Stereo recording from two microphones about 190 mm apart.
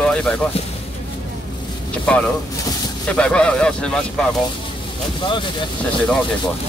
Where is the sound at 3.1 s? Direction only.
5° left (ahead or behind).